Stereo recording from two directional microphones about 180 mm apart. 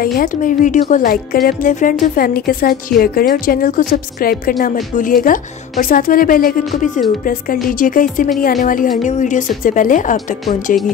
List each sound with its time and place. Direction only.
0.0 s a woman's voice: 55° left (ahead or behind)